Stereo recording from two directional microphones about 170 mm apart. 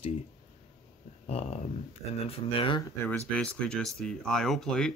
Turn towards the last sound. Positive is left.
turn(degrees=5)  # may be behind; listen again after turning